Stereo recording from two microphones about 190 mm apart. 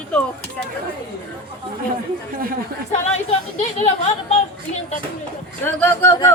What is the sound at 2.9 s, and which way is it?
A woman's voice, 40° left (ahead or behind).